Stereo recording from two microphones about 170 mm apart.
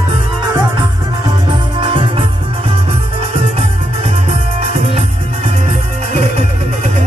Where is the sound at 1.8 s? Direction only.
30° right (ahead or behind).